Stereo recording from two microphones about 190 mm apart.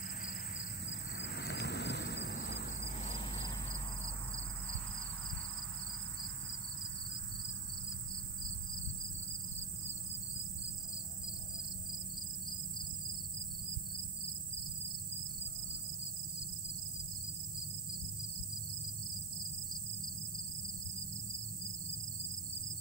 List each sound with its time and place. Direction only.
0.2 s vehicle: 45° left (ahead or behind)
0.8 s vehicle: 65° left (ahead or behind)
3.0 s cricket: 30° left (ahead or behind)